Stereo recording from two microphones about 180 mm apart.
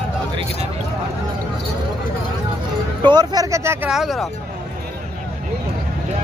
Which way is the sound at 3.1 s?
25° right (ahead or behind).